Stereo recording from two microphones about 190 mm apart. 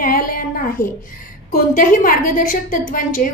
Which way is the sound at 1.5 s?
50° left (ahead or behind).